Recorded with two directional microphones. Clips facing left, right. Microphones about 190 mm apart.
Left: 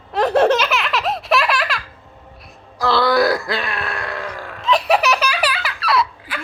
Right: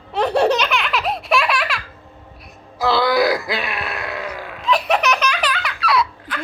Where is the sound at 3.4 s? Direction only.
20° right (ahead or behind).